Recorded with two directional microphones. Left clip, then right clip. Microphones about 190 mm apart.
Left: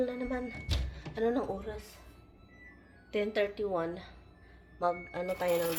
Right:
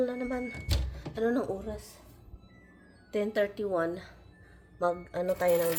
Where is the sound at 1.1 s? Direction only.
20° right (ahead or behind).